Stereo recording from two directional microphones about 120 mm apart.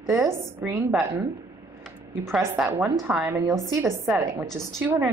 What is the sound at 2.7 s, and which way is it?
A woman's voice, 15° right (ahead or behind).